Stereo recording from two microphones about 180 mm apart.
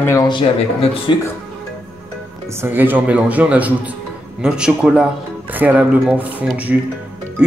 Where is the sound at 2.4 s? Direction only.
15° right (ahead or behind).